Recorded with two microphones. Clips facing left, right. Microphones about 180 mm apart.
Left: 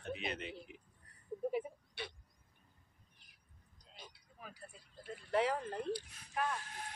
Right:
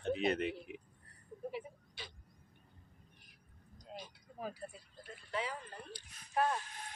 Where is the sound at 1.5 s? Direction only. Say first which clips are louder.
Left 5 dB; 65° left (ahead or behind).